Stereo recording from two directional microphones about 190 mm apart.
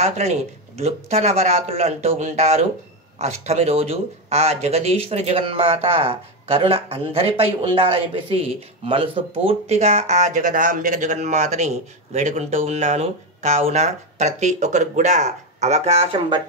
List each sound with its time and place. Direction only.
0.0 s speech: 35° right (ahead or behind)